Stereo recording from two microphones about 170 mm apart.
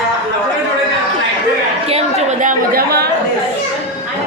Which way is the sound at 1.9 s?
40° right (ahead or behind).